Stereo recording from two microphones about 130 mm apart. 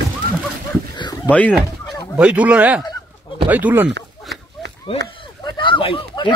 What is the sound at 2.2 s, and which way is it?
A man's voice, 10° right (ahead or behind).